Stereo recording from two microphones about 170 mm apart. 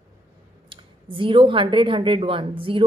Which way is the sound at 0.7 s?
30° right (ahead or behind).